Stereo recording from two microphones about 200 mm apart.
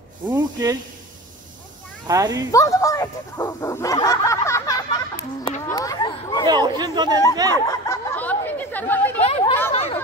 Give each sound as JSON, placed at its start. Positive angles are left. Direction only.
{"t": 0.3, "sound": "speech", "side_deg": -20}
{"t": 2.0, "sound": "speech", "side_deg": -15}
{"t": 2.5, "sound": "speech", "side_deg": 15}
{"t": 6.4, "sound": "speech", "side_deg": -20}
{"t": 7.5, "sound": "chatter", "side_deg": 15}
{"t": 9.2, "sound": "chatter", "side_deg": 30}